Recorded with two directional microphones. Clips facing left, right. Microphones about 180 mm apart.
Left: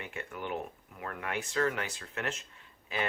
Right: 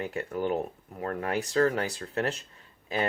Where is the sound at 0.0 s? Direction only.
35° right (ahead or behind).